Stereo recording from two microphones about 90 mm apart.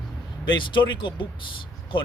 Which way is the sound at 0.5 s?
60° left (ahead or behind).